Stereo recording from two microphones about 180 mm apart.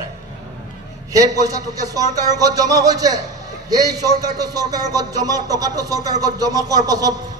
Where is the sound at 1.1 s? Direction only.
20° right (ahead or behind).